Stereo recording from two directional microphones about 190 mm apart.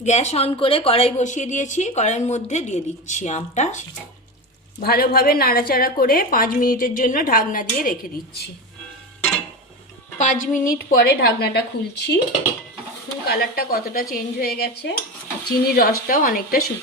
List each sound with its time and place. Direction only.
0.0 s a woman's voice: 35° left (ahead or behind)
4.8 s a woman's voice: 55° left (ahead or behind)
10.2 s a woman's voice: 40° left (ahead or behind); by 12.2 s 65° left (ahead or behind)
13.2 s a woman's voice: 55° left (ahead or behind)